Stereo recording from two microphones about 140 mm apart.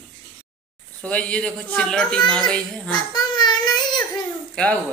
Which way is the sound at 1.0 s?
10° left (ahead or behind).